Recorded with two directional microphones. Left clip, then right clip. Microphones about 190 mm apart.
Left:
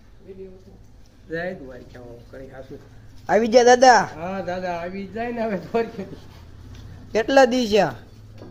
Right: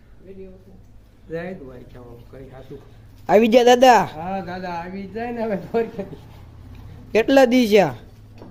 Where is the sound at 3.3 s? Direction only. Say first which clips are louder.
Right 1 dB; 45° right (ahead or behind).